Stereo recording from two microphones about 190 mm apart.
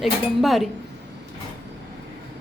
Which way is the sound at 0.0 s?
Centre (ahead or behind).